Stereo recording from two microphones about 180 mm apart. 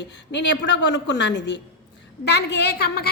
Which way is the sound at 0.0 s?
75° left (ahead or behind).